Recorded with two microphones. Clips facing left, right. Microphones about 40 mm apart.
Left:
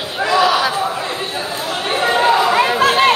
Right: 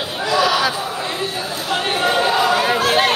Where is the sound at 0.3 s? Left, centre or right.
Left.